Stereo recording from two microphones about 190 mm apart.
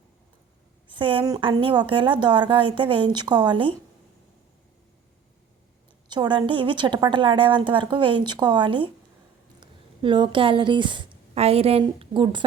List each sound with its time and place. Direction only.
0.9 s a woman's voice: 25° right (ahead or behind)
6.1 s a woman's voice: 25° right (ahead or behind)